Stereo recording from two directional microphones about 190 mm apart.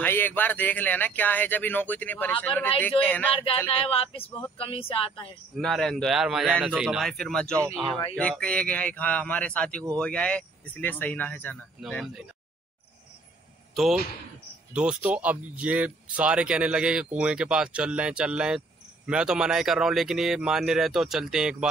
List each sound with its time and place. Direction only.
0.0 s speech: 10° left (ahead or behind)
3.7 s speech: 30° left (ahead or behind)
5.6 s speech: centre (ahead or behind)
14.7 s speech: 5° right (ahead or behind)